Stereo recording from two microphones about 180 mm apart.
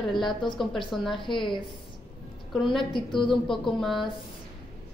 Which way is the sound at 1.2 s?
25° left (ahead or behind).